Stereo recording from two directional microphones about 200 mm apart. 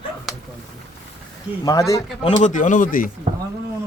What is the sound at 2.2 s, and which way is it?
Speech, 35° left (ahead or behind).